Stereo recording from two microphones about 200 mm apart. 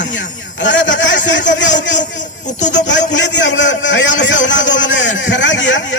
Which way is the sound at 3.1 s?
65° left (ahead or behind).